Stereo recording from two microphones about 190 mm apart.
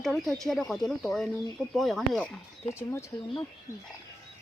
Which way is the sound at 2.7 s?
15° left (ahead or behind).